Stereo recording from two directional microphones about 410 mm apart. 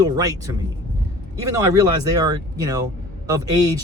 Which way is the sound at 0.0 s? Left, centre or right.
Centre.